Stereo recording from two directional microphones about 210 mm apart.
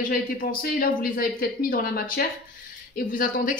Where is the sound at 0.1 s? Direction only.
45° left (ahead or behind).